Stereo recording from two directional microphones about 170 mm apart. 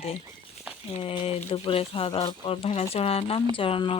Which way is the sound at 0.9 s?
35° left (ahead or behind).